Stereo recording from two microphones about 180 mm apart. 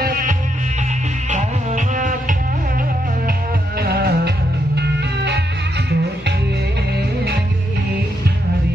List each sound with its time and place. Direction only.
0.0 s music: 50° right (ahead or behind)
3.8 s music: 60° right (ahead or behind)